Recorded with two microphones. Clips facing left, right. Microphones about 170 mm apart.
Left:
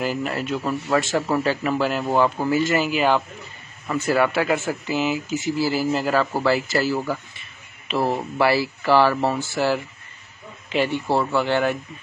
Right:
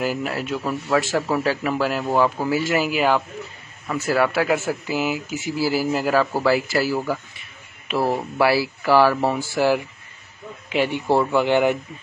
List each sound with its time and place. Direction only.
0.0 s speech: 5° right (ahead or behind)